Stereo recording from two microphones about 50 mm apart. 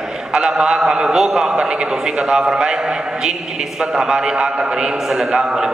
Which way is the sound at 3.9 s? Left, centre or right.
Centre.